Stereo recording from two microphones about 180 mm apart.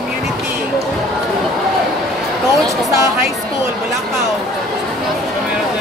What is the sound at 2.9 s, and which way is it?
Speech, 15° right (ahead or behind).